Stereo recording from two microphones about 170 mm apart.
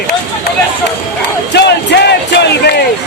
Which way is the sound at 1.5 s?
85° left.